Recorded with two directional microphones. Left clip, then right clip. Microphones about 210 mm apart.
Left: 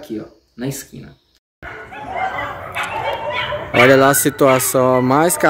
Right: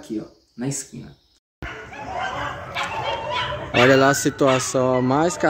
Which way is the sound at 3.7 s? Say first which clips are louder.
Left 5 dB; 10° left (ahead or behind).